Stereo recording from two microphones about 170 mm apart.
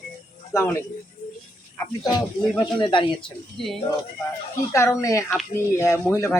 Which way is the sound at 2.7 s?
30° left (ahead or behind).